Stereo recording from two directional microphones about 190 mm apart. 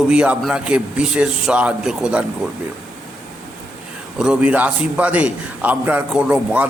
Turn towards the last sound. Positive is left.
turn(degrees=-5)  # may be behind; listen again after turning